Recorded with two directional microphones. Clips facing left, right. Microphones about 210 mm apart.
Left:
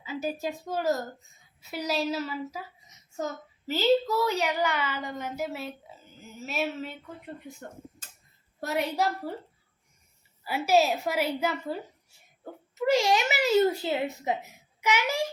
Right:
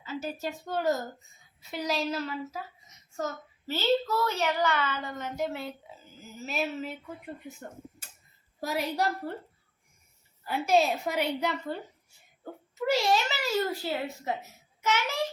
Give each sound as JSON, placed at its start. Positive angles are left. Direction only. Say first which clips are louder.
{"t": 0.0, "sound": "a woman's voice", "louder": "left 3 dB", "side_deg": 10}
{"t": 8.6, "sound": "a woman's voice", "louder": "left 2 dB", "side_deg": 0}
{"t": 10.4, "sound": "a woman's voice", "louder": "left 1 dB", "side_deg": 5}
{"t": 12.4, "sound": "a sound", "louder": "left 2 dB", "side_deg": 0}
{"t": 13.1, "sound": "a woman's voice", "louder": "left 3 dB", "side_deg": 15}